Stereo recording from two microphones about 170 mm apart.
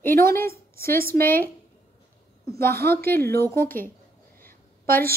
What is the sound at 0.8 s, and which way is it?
Speech, 60° right (ahead or behind).